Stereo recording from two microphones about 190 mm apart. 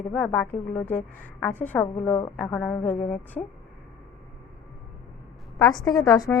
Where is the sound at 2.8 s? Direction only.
40° left (ahead or behind).